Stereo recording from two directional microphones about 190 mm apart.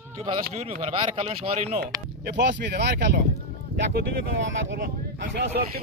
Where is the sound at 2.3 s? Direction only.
65° right (ahead or behind).